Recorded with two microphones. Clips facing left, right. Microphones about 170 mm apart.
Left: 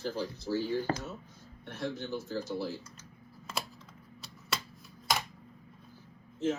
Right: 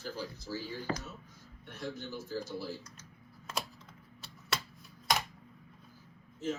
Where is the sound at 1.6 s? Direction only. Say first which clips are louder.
Left 4 dB; 70° left (ahead or behind).